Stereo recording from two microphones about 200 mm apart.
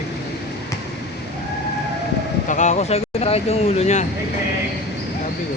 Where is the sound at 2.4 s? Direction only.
40° left (ahead or behind).